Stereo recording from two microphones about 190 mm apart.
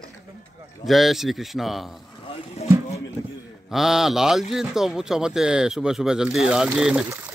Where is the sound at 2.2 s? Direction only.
35° left (ahead or behind).